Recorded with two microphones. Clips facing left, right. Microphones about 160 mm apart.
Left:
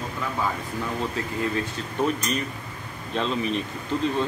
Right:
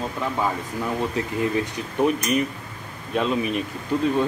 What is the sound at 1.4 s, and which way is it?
Speech, 15° right (ahead or behind).